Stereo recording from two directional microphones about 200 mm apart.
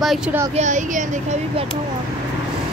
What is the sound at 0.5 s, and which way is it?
Speech, 35° right (ahead or behind).